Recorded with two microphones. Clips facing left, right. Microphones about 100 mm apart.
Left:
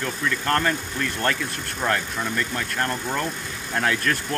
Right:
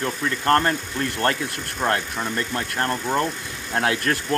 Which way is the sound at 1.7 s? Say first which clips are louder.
Right 2 dB; 10° right (ahead or behind).